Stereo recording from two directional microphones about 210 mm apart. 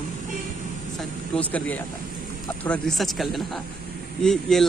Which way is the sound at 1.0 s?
5° left (ahead or behind).